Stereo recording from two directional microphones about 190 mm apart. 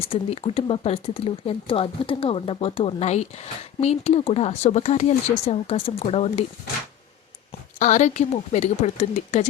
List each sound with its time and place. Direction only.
0.1 s speech: 30° left (ahead or behind)
7.8 s speech: 40° left (ahead or behind)